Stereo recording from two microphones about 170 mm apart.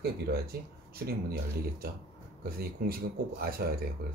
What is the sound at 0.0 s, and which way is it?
Speech, 65° right (ahead or behind).